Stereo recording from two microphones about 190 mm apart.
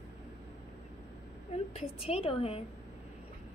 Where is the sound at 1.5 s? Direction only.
30° left (ahead or behind).